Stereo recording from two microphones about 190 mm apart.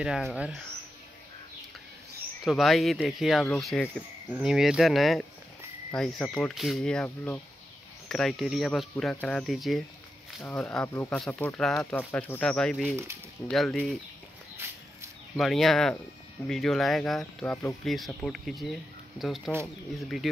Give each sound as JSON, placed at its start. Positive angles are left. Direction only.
{"t": 0.0, "sound": "speech", "side_deg": 0}
{"t": 2.4, "sound": "speech", "side_deg": 0}
{"t": 10.4, "sound": "speech", "side_deg": 15}
{"t": 12.9, "sound": "speech", "side_deg": -15}
{"t": 13.5, "sound": "speech", "side_deg": 0}
{"t": 14.6, "sound": "a sound", "side_deg": -10}
{"t": 15.3, "sound": "speech", "side_deg": 0}